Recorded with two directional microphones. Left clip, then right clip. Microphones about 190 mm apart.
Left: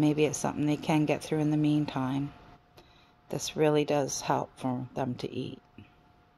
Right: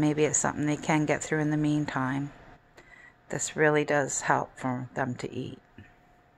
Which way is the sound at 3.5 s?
20° left (ahead or behind).